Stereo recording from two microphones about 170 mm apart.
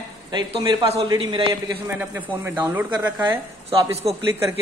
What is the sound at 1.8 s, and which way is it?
A woman's voice, 15° right (ahead or behind).